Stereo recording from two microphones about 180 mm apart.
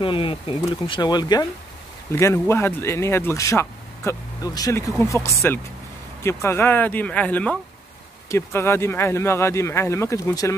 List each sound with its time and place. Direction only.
0.0 s speech: 30° left (ahead or behind)